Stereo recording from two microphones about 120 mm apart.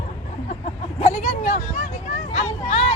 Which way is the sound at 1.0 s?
65° left (ahead or behind).